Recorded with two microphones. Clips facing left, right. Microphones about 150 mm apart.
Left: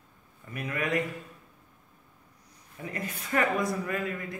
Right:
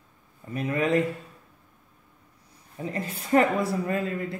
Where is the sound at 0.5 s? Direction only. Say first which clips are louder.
Right 6 dB; 30° right (ahead or behind).